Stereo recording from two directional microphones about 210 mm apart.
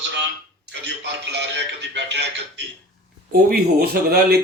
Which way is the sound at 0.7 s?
55° right (ahead or behind).